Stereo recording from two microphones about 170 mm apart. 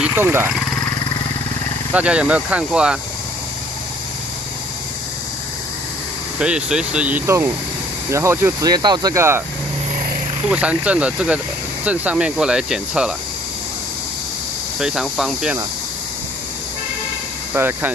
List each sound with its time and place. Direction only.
0.0 s speech: 10° right (ahead or behind)
2.0 s speech: 5° right (ahead or behind)
6.4 s speech: 5° right (ahead or behind)
10.5 s speech: 10° right (ahead or behind)
14.8 s cricket: 5° right (ahead or behind)
17.6 s speech: 10° right (ahead or behind)